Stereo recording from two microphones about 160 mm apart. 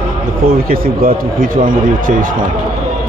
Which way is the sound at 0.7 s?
60° right (ahead or behind).